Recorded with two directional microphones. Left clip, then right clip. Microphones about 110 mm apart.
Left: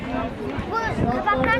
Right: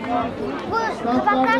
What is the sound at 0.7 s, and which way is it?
Speech, 5° right (ahead or behind).